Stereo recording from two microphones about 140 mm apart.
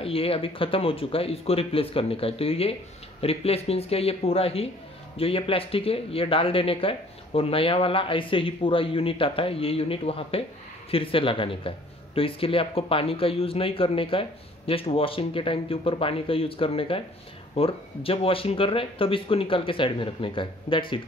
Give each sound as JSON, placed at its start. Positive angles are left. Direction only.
{"t": 0.0, "sound": "speech", "side_deg": 40}